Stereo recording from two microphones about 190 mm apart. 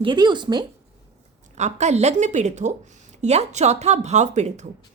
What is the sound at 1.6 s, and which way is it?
A woman's voice, 35° right (ahead or behind).